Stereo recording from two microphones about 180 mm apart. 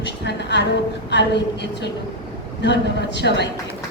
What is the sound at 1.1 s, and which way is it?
A man's voice, 75° left (ahead or behind).